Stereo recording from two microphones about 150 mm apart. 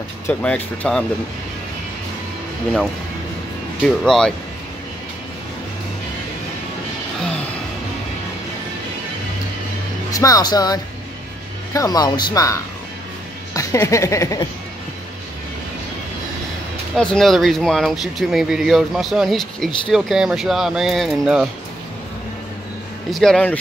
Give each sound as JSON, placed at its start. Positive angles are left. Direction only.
{"t": 0.3, "sound": "speech", "side_deg": 10}
{"t": 4.0, "sound": "speech", "side_deg": 5}
{"t": 7.2, "sound": "music", "side_deg": 5}
{"t": 10.1, "sound": "speech", "side_deg": 25}
{"t": 16.9, "sound": "speech", "side_deg": 5}
{"t": 23.1, "sound": "speech", "side_deg": 5}